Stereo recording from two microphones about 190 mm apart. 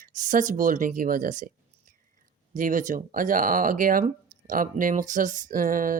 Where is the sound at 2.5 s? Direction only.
45° right (ahead or behind).